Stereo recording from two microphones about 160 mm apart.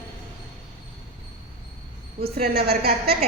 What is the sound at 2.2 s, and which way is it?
Speech, 75° right (ahead or behind).